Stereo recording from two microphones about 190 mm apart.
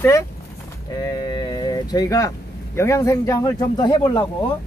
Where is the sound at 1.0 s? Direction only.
20° left (ahead or behind).